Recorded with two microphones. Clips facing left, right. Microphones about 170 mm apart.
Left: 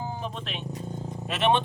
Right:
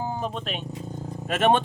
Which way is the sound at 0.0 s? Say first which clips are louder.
Right 5 dB; 50° right (ahead or behind).